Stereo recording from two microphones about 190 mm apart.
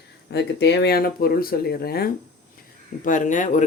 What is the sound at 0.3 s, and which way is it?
Speech, 65° left (ahead or behind).